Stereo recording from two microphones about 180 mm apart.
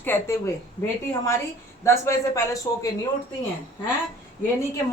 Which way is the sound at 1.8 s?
15° left (ahead or behind).